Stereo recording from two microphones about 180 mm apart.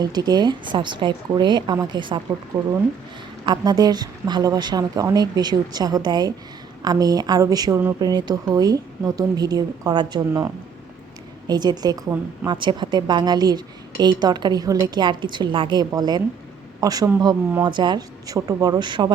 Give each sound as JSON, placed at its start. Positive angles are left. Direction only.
{"t": 0.0, "sound": "a woman's voice", "side_deg": -20}
{"t": 2.6, "sound": "speech", "side_deg": -5}
{"t": 3.4, "sound": "a woman's voice", "side_deg": -25}